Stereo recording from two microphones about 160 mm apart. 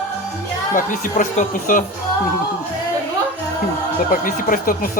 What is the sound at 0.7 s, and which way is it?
Speech, 55° left (ahead or behind).